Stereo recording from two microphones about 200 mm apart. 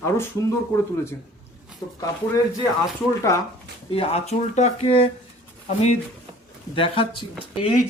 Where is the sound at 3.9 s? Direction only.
30° left (ahead or behind).